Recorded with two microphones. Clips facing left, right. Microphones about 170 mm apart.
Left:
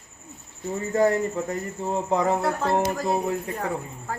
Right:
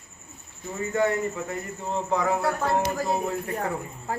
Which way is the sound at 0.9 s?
35° left (ahead or behind).